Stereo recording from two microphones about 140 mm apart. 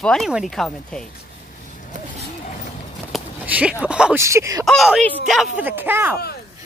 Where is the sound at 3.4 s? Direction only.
10° right (ahead or behind).